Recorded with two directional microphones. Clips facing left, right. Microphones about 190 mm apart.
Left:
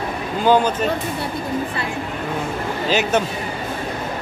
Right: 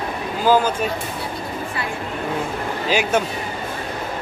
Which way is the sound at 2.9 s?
10° right (ahead or behind).